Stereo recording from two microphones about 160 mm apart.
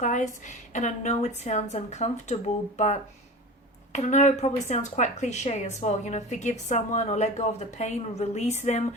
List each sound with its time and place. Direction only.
0.0 s a woman's voice: 50° left (ahead or behind)